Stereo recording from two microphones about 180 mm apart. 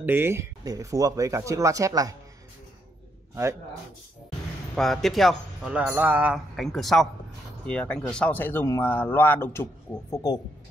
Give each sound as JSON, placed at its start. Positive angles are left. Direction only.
{"t": 0.0, "sound": "speech", "side_deg": -10}
{"t": 4.7, "sound": "speech", "side_deg": 0}